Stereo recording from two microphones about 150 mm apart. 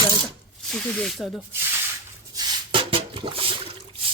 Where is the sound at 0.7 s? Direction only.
Centre (ahead or behind).